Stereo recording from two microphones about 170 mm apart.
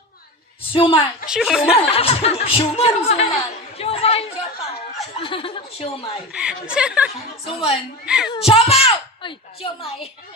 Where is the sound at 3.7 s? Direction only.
35° left (ahead or behind).